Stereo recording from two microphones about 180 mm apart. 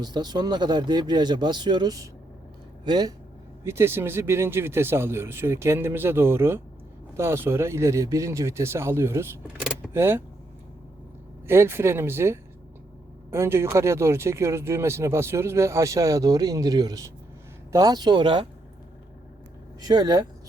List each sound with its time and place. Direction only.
0.0 s speech: 25° right (ahead or behind)
9.6 s vehicle: centre (ahead or behind)
9.9 s speech: 15° right (ahead or behind)
11.4 s speech: 15° right (ahead or behind)
19.8 s speech: 25° right (ahead or behind)